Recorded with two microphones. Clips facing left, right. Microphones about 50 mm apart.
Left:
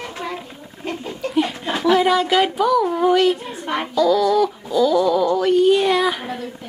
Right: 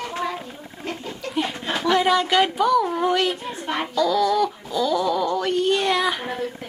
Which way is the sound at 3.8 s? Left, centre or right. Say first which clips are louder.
Left 4 dB; centre.